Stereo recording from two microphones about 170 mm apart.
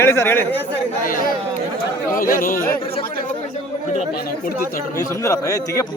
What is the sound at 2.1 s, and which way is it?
Speech, 55° left (ahead or behind).